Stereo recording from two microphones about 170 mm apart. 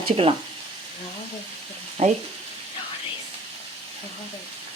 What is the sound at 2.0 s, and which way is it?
Speech, 40° right (ahead or behind).